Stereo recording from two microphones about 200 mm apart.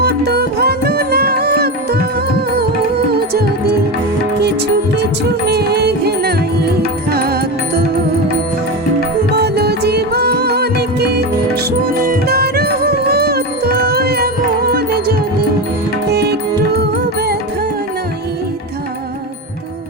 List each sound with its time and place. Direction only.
0.0 s music: 55° right (ahead or behind)
3.1 s music: 50° right (ahead or behind)
5.5 s music: 55° right (ahead or behind)
9.3 s music: 55° right (ahead or behind)
16.1 s music: 55° right (ahead or behind)